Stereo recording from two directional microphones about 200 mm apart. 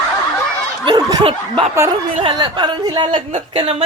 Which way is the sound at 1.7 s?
15° right (ahead or behind).